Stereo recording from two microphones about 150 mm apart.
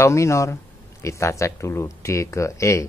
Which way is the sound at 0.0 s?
20° left (ahead or behind).